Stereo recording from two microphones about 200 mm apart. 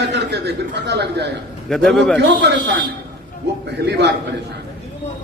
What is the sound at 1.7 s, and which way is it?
Speech, 5° left (ahead or behind).